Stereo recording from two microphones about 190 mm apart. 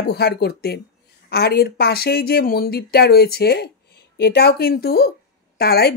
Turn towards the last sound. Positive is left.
turn(degrees=55)  # may be behind; listen again after turning